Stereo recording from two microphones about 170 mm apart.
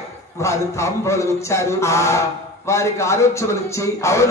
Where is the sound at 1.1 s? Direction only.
15° left (ahead or behind).